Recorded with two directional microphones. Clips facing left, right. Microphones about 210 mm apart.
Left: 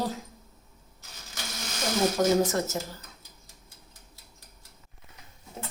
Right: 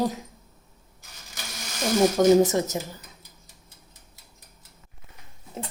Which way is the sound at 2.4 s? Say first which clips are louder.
Right 4 dB; 20° right (ahead or behind).